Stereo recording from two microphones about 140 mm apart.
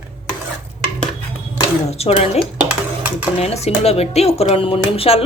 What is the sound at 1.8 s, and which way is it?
Speech, 45° left (ahead or behind).